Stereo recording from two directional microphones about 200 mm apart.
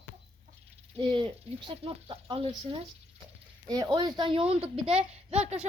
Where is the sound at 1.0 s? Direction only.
25° right (ahead or behind).